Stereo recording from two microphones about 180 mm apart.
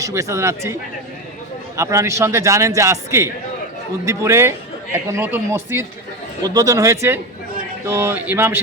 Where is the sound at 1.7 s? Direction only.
15° right (ahead or behind).